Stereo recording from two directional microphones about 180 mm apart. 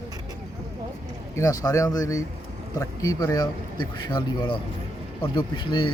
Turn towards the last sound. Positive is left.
turn(degrees=25)  # may be behind; listen again after turning